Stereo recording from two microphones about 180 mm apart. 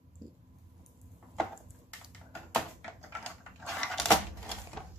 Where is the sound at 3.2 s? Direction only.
5° left (ahead or behind).